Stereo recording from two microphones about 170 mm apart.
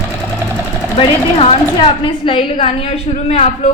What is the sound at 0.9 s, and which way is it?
A woman's voice, 30° left (ahead or behind).